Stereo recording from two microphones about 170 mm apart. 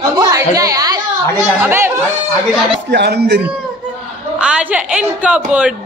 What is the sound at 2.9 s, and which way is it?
Speech, 75° right (ahead or behind).